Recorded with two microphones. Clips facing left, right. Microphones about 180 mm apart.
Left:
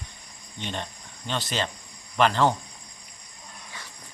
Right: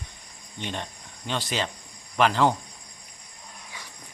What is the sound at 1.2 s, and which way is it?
Speech, 10° right (ahead or behind).